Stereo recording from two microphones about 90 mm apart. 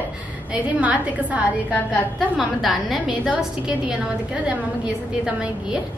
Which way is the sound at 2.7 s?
Centre (ahead or behind).